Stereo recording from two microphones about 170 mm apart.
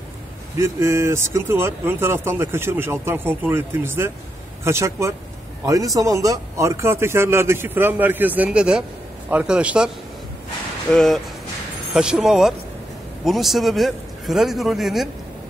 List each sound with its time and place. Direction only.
0.6 s speech: 15° right (ahead or behind)
10.9 s a man's voice: centre (ahead or behind)